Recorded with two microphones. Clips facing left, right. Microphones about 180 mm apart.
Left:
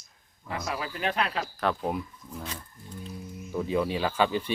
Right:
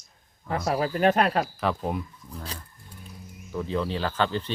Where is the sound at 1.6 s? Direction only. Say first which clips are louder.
Right 1 dB; centre (ahead or behind).